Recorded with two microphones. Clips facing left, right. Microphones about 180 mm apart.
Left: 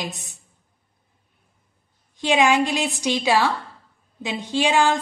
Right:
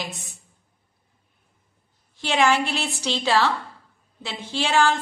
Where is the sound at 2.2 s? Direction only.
15° left (ahead or behind).